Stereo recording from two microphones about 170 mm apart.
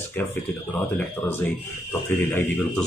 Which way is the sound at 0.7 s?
10° left (ahead or behind).